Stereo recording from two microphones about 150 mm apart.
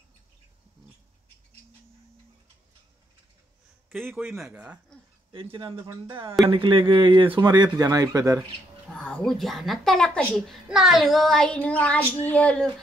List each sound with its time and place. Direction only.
4.4 s speech: 5° right (ahead or behind)
5.3 s speech: 35° right (ahead or behind)
8.9 s a child's voice: 5° left (ahead or behind)